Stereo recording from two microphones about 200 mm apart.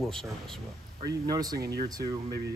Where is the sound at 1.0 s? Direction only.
20° right (ahead or behind).